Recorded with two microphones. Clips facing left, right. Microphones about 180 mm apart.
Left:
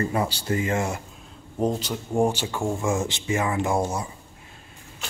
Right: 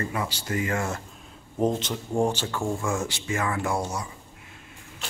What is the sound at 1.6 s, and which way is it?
Speech, centre (ahead or behind).